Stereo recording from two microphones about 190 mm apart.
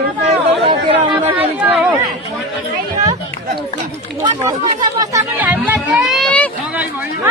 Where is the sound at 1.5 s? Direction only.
10° right (ahead or behind).